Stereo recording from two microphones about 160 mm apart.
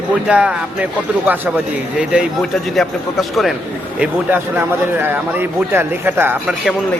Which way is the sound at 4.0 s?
10° right (ahead or behind).